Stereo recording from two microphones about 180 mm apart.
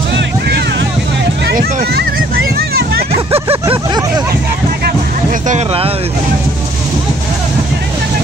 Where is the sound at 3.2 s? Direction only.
30° right (ahead or behind).